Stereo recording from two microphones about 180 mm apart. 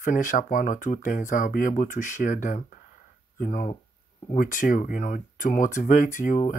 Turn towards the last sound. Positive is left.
turn(degrees=45)  # may be behind; listen again after turning